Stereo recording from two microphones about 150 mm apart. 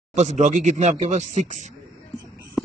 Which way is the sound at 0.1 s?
50° right (ahead or behind).